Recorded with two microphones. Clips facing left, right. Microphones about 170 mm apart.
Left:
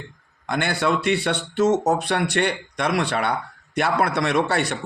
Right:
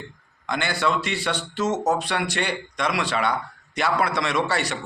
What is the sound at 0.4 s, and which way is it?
A man's voice, 55° left (ahead or behind).